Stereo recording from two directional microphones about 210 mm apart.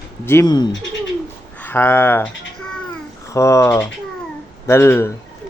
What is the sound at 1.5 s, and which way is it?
Speech, 10° left (ahead or behind).